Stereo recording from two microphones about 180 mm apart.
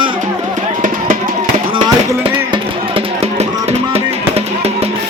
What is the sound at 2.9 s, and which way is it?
Music, 35° right (ahead or behind).